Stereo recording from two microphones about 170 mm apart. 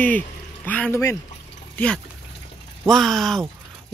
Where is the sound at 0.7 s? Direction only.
10° left (ahead or behind).